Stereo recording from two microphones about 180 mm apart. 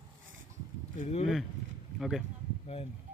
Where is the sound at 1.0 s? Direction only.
35° left (ahead or behind).